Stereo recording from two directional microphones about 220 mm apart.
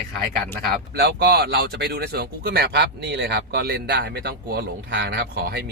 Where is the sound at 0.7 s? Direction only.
50° right (ahead or behind).